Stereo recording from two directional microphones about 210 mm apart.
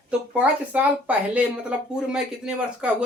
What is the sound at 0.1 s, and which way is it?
Speech, 5° right (ahead or behind).